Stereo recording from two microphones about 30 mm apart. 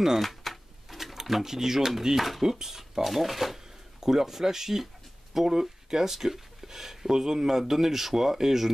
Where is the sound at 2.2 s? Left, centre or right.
Centre.